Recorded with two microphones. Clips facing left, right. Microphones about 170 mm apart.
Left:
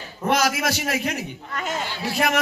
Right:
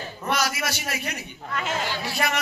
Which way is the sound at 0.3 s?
90° left.